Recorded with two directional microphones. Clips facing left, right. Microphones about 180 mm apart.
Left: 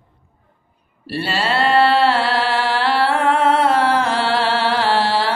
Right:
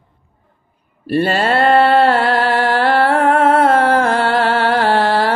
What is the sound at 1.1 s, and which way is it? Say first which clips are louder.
Mantra: right 6 dB; 50° right (ahead or behind).